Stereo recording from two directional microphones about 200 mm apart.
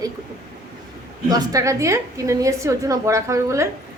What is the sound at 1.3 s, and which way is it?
A woman's voice, 20° right (ahead or behind).